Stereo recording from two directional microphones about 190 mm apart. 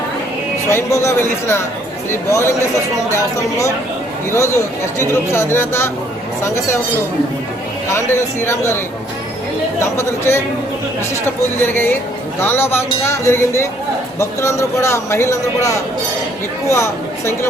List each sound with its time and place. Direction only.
0.7 s speech: 15° left (ahead or behind)
7.9 s speech: 15° left (ahead or behind)
9.8 s speech: 15° left (ahead or behind)